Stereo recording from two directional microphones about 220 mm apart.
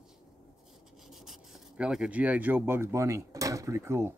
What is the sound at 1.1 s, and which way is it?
Speech, centre (ahead or behind).